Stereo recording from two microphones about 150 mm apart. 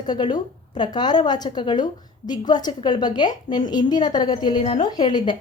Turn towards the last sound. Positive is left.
turn(degrees=30)  # may be behind; listen again after turning